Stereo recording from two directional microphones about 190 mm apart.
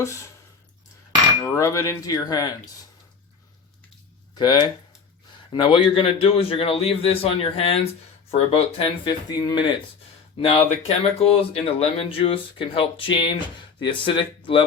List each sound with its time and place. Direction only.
0.0 s speech: 15° left (ahead or behind)
1.5 s speech: 15° left (ahead or behind)
4.4 s a man's voice: 20° left (ahead or behind)